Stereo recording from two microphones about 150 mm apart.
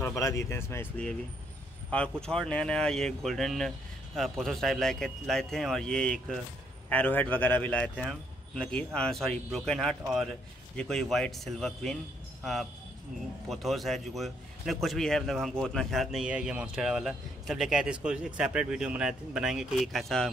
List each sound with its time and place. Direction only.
0.0 s a man's voice: 20° left (ahead or behind); by 12.0 s centre (ahead or behind)
13.5 s a man's voice: centre (ahead or behind)